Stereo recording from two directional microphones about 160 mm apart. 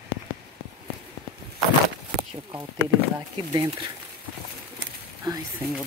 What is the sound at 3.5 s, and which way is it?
Speech, 25° right (ahead or behind).